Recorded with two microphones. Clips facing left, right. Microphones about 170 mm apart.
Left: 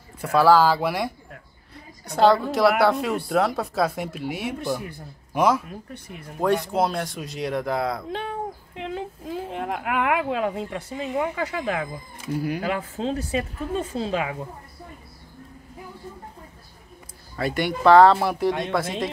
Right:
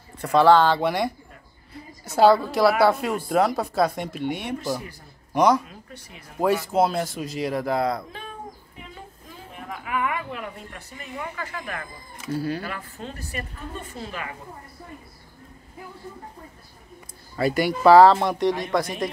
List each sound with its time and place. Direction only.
0.2 s a woman's voice: 5° left (ahead or behind)
5.7 s speech: 55° left (ahead or behind)
6.4 s speech: 5° right (ahead or behind)
8.1 s a sound: 75° left (ahead or behind)
12.3 s speech: 15° left (ahead or behind)
12.6 s speech: 90° left
17.4 s speech: centre (ahead or behind)